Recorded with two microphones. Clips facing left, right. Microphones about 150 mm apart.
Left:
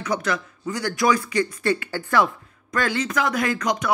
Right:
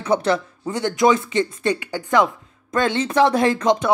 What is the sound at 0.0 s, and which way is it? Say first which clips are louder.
Speech: right 6 dB; 30° right (ahead or behind).